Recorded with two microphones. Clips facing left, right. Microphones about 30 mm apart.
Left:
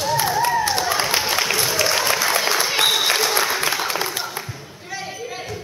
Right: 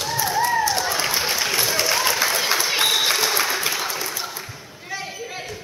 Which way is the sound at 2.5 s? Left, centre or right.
Centre.